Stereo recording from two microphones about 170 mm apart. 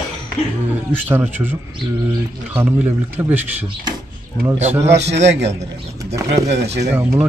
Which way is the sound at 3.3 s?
30° right (ahead or behind).